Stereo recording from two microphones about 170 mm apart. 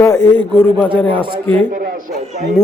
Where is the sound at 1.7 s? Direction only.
55° right (ahead or behind).